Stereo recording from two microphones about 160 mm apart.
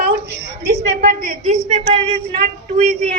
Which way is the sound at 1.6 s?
45° right (ahead or behind).